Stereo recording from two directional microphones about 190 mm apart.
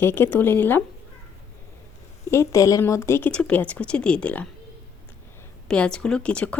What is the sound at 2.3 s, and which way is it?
Speech, 15° left (ahead or behind).